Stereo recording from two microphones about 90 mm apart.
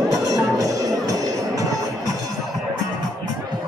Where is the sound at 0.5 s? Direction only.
40° right (ahead or behind).